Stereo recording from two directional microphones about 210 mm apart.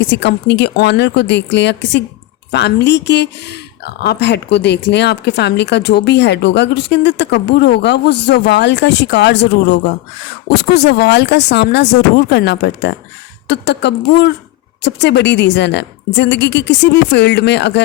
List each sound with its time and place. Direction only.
0.0 s speech: 55° left (ahead or behind)
10.5 s speech: 55° left (ahead or behind)